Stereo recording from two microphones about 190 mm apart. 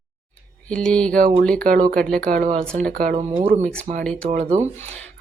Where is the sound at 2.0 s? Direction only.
5° left (ahead or behind).